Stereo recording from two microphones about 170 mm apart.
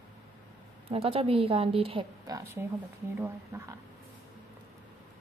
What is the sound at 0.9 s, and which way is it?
A woman's voice, 35° right (ahead or behind).